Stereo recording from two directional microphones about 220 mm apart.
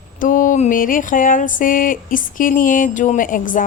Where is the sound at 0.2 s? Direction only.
35° left (ahead or behind).